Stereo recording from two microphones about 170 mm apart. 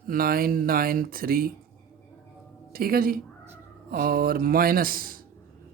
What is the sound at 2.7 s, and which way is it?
Speech, 60° right (ahead or behind).